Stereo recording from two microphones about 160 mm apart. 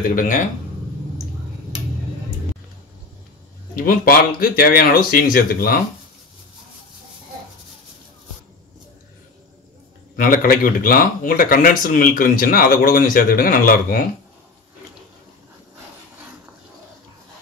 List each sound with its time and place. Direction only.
0.1 s speech: 55° left (ahead or behind)
3.7 s speech: 60° left (ahead or behind)
10.1 s speech: 60° left (ahead or behind)